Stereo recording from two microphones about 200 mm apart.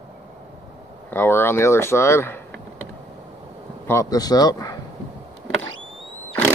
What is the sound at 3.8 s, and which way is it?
Speech, 15° left (ahead or behind).